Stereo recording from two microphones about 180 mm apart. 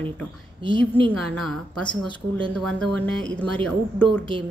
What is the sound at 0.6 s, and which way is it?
Speech, 30° right (ahead or behind).